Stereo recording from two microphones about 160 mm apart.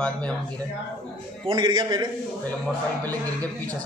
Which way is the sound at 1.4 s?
30° right (ahead or behind).